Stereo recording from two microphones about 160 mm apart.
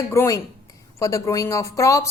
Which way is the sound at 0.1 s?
20° left (ahead or behind).